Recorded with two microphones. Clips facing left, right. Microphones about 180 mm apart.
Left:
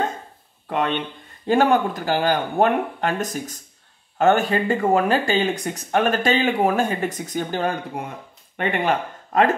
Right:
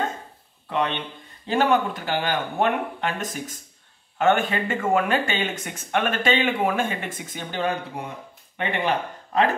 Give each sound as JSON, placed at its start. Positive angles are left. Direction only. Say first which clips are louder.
{"t": 0.7, "sound": "speech", "louder": "left 2 dB", "side_deg": 45}